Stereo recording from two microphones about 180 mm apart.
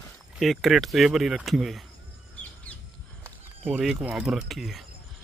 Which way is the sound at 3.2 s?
5° right (ahead or behind).